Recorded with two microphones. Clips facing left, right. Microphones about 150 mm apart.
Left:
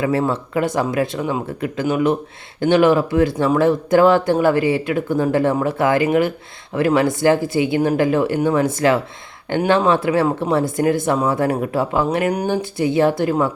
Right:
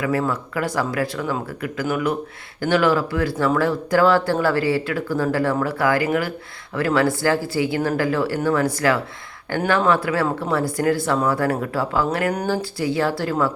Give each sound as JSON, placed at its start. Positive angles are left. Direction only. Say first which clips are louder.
{"t": 0.0, "sound": "speech", "louder": "left 3 dB", "side_deg": 25}